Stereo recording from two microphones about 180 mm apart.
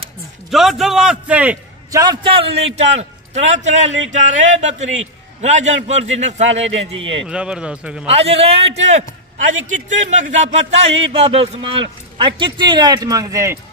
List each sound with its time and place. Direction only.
0.5 s a man's voice: centre (ahead or behind)
1.9 s speech: 20° right (ahead or behind); by 6.7 s 40° right (ahead or behind)
6.8 s a man's voice: 90° right
7.2 s a man's voice: 5° right (ahead or behind)
8.1 s speech: 35° right (ahead or behind); by 13.6 s 15° right (ahead or behind)